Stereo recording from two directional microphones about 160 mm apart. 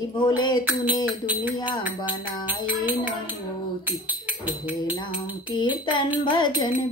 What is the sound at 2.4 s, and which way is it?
Speech, 10° right (ahead or behind).